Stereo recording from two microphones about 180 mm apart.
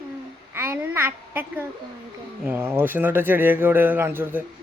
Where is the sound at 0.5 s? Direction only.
10° right (ahead or behind).